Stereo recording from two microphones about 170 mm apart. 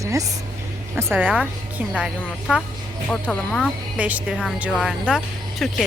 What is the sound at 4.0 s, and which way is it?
A woman's voice, 10° right (ahead or behind).